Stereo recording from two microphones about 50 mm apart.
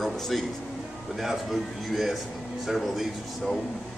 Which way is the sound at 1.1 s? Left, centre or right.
Centre.